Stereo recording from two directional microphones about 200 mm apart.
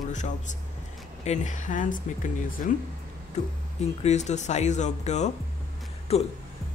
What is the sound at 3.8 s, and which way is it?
Speech, 35° left (ahead or behind).